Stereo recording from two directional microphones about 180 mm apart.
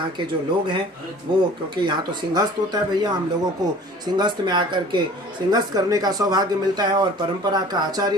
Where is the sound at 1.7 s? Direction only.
25° right (ahead or behind).